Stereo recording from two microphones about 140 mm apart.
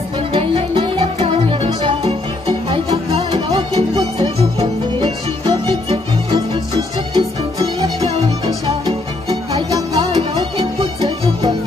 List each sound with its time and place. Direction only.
0.3 s music: 40° right (ahead or behind)
3.4 s music: 45° right (ahead or behind)
7.2 s music: 30° right (ahead or behind)
9.5 s music: 25° right (ahead or behind)
10.1 s music: 45° right (ahead or behind)